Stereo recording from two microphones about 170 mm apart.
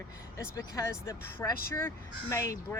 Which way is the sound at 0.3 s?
20° left (ahead or behind).